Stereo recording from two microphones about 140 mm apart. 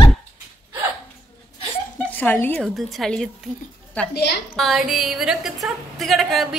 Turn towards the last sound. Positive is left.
turn(degrees=0)  # may be behind; listen again after turning